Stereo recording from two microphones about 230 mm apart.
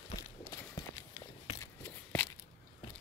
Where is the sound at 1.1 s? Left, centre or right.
Left.